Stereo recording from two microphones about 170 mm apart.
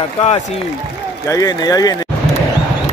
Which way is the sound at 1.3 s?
20° left (ahead or behind).